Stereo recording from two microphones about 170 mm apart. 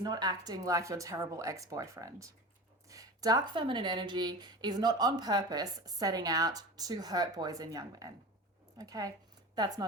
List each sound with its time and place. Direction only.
0.0 s a woman's voice: 25° right (ahead or behind)